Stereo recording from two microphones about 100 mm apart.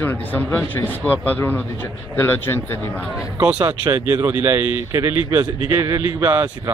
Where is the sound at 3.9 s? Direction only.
30° right (ahead or behind).